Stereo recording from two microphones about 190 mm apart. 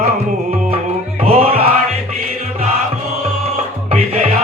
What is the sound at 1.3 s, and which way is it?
Music, 30° right (ahead or behind).